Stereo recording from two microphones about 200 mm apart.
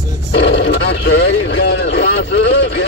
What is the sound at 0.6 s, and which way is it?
Vehicle, 60° left (ahead or behind).